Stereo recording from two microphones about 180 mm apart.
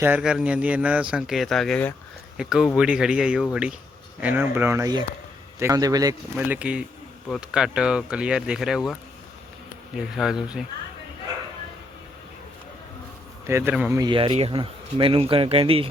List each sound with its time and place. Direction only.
0.0 s speech: 5° right (ahead or behind)
6.4 s speech: 10° right (ahead or behind)
13.5 s speech: 10° right (ahead or behind)
14.0 s speech: 30° right (ahead or behind)